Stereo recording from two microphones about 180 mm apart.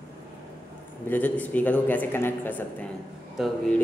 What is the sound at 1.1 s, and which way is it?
A man's voice, 10° left (ahead or behind).